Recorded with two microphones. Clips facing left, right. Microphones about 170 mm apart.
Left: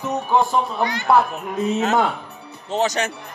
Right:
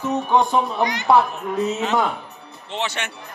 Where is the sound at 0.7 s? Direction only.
15° right (ahead or behind).